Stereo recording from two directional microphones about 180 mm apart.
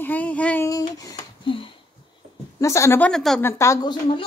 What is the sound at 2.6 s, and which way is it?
Speech, 15° left (ahead or behind).